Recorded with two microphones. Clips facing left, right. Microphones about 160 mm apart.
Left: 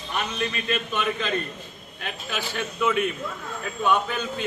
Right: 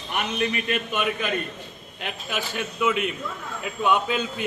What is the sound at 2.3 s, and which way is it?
A man's voice, 10° right (ahead or behind).